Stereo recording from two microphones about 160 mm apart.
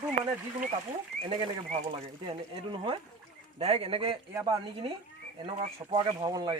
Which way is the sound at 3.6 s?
40° right (ahead or behind).